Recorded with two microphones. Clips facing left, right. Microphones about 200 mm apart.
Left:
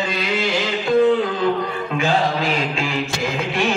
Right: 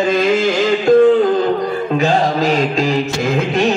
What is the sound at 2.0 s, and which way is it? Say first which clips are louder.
Mantra: right 4 dB; 40° right (ahead or behind).